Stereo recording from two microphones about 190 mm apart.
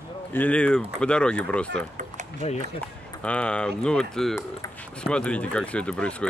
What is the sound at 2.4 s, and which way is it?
Speech, 35° left (ahead or behind).